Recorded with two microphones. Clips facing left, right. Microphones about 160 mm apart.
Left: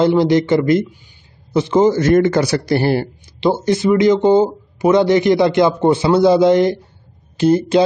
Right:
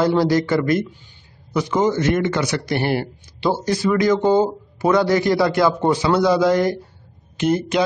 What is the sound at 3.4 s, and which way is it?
Speech, 20° left (ahead or behind).